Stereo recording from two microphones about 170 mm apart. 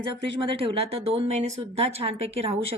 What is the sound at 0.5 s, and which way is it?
A woman's voice, 35° right (ahead or behind).